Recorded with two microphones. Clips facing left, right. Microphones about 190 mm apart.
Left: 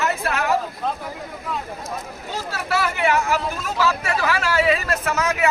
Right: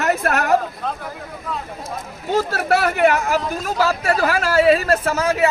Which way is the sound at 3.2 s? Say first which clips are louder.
Right 1 dB; 40° right (ahead or behind).